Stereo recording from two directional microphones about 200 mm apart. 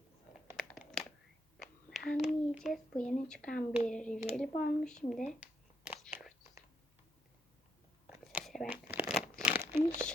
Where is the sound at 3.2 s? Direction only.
5° left (ahead or behind).